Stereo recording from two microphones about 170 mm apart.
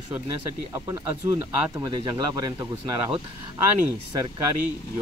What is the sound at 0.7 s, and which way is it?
Speech, 20° right (ahead or behind).